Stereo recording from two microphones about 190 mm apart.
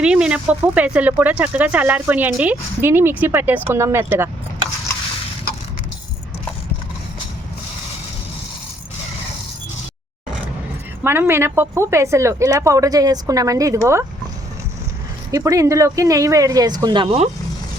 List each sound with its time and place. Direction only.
0.0 s speech: 5° right (ahead or behind)
11.0 s speech: 10° right (ahead or behind)
15.3 s speech: 20° right (ahead or behind)